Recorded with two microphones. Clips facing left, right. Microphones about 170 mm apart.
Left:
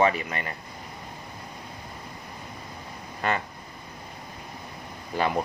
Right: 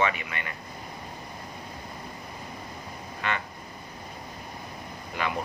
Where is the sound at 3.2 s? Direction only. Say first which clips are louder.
Left 4 dB; 40° left (ahead or behind).